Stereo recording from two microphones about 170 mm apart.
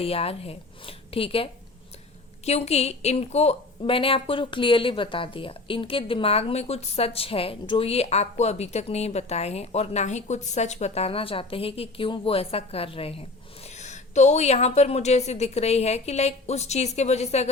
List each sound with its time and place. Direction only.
0.0 s a woman's voice: 35° left (ahead or behind)